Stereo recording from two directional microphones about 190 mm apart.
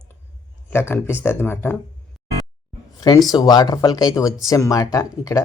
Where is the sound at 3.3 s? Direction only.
20° left (ahead or behind).